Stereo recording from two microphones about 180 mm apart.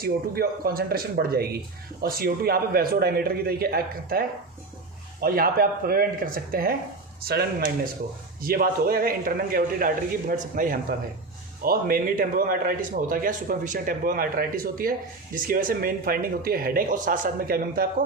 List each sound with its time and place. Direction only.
0.0 s a man's voice: 55° right (ahead or behind)